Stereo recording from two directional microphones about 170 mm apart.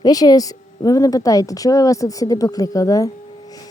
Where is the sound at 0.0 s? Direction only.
20° left (ahead or behind).